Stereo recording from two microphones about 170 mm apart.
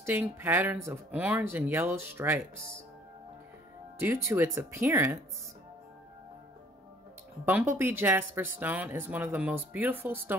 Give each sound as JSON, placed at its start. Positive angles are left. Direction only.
{"t": 0.0, "sound": "speech", "side_deg": -10}
{"t": 4.0, "sound": "speech", "side_deg": -15}
{"t": 7.4, "sound": "speech", "side_deg": -10}